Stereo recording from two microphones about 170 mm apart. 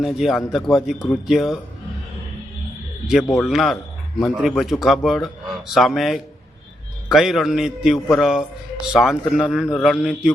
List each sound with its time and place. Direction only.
0.0 s speech: centre (ahead or behind)
3.4 s speech: centre (ahead or behind)